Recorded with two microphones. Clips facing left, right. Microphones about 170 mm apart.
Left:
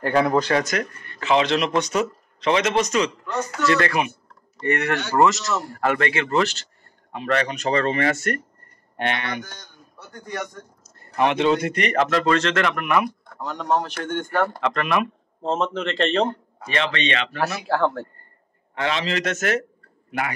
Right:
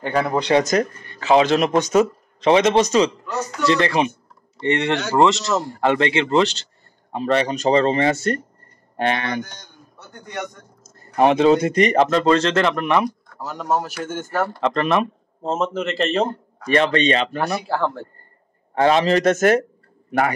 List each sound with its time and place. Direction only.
0.0 s a man's voice: centre (ahead or behind)
0.7 s speech: 35° right (ahead or behind)
2.5 s a man's voice: 30° right (ahead or behind)
9.5 s a man's voice: 20° right (ahead or behind)
11.1 s a man's voice: 35° right (ahead or behind)
13.4 s a man's voice: 5° right (ahead or behind)
14.6 s a man's voice: 30° right (ahead or behind)
15.4 s a man's voice: 5° right (ahead or behind)
16.7 s speech: 45° right (ahead or behind)
17.6 s a man's voice: centre (ahead or behind)
18.8 s a man's voice: 45° right (ahead or behind)